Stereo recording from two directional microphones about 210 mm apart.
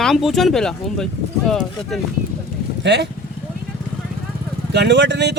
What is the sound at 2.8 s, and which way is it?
Speech, 55° right (ahead or behind).